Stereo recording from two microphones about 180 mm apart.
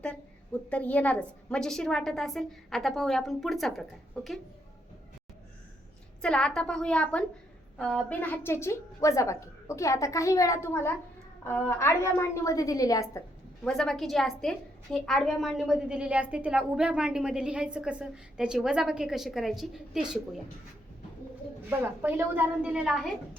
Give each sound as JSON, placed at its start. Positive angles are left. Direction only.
{"t": 0.7, "sound": "a woman's voice", "side_deg": 10}
{"t": 6.2, "sound": "a woman's voice", "side_deg": 5}
{"t": 13.7, "sound": "a woman's voice", "side_deg": 5}
{"t": 21.7, "sound": "a woman's voice", "side_deg": -10}